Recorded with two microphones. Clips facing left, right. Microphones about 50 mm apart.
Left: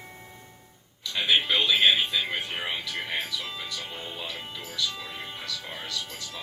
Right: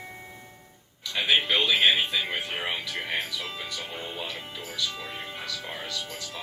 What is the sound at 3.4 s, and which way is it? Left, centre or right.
Speech, centre.